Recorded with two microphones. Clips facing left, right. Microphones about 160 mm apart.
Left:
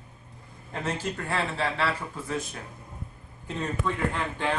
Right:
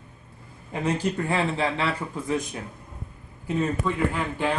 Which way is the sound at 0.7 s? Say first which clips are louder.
Right 5 dB; 15° right (ahead or behind).